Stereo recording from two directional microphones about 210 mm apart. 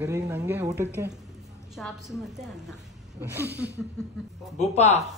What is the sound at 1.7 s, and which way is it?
A man's voice, centre (ahead or behind).